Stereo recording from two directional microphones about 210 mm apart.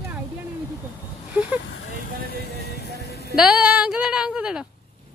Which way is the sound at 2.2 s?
50° left (ahead or behind).